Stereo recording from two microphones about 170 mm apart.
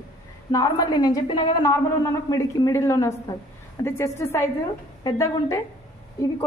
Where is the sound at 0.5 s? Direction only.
20° left (ahead or behind).